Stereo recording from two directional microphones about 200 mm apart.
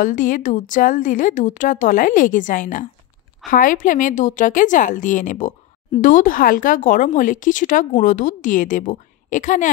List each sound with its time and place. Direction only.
0.0 s speech: 40° left (ahead or behind)